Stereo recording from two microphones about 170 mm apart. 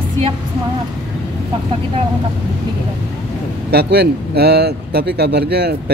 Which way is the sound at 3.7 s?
70° right (ahead or behind).